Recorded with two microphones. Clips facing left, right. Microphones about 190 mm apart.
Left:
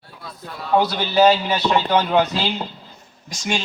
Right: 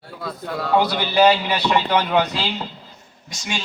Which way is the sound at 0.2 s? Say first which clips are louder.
Right 7 dB; 90° right.